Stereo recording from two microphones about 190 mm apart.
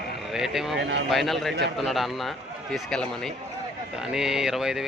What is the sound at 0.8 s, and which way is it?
Speech, 65° right (ahead or behind).